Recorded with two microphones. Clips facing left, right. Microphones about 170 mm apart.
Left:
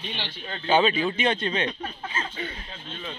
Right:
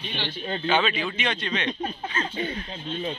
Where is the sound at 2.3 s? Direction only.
25° right (ahead or behind).